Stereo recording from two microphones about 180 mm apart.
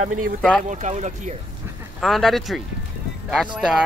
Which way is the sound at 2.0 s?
Centre (ahead or behind).